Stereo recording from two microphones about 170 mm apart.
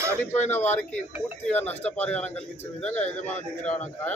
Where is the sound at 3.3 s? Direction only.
45° left (ahead or behind).